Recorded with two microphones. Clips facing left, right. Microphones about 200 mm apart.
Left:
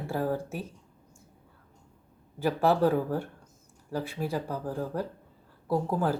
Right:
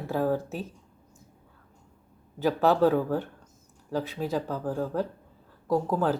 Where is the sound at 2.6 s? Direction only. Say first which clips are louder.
Right 2 dB; 10° left (ahead or behind).